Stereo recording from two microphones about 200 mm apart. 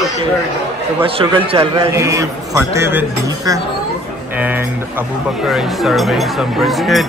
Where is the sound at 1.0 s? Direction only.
25° right (ahead or behind).